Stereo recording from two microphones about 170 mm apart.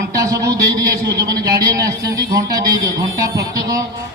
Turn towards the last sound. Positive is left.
turn(degrees=-20)  # may be behind; listen again after turning